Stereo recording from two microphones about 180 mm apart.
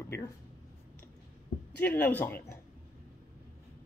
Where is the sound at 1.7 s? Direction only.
10° left (ahead or behind).